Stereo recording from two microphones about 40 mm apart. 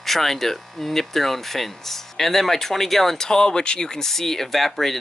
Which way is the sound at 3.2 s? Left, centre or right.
Centre.